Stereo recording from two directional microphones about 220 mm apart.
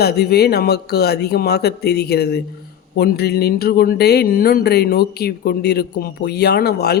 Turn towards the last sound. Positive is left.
turn(degrees=45)  # may be behind; listen again after turning